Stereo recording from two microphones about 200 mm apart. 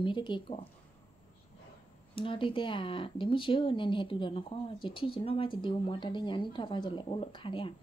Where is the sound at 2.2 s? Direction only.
25° left (ahead or behind).